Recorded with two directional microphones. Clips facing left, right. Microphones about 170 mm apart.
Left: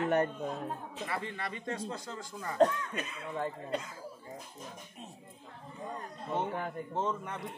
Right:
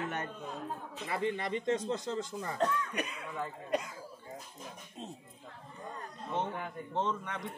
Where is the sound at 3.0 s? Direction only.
35° left (ahead or behind).